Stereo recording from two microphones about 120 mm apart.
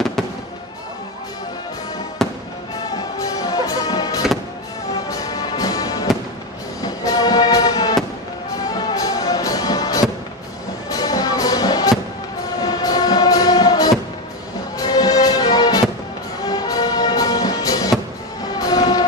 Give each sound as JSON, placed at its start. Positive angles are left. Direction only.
{"t": 2.2, "sound": "fireworks", "side_deg": 0}
{"t": 3.0, "sound": "music", "side_deg": 30}
{"t": 18.6, "sound": "vehicle", "side_deg": 30}